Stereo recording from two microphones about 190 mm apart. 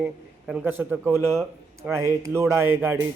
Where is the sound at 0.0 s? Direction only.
5° right (ahead or behind).